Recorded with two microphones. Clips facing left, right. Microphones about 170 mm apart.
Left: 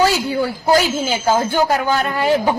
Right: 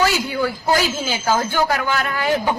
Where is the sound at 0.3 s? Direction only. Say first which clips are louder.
Left 3 dB; 30° left (ahead or behind).